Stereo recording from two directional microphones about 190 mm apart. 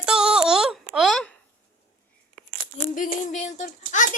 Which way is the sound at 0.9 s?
Centre (ahead or behind).